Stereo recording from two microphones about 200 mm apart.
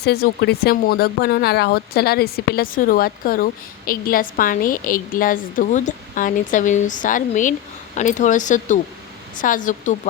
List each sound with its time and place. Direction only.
0.0 s speech: 55° left (ahead or behind)